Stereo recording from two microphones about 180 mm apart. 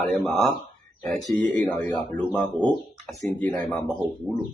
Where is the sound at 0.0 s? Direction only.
Centre (ahead or behind).